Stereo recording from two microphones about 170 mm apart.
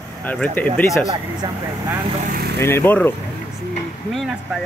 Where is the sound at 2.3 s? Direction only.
60° right (ahead or behind).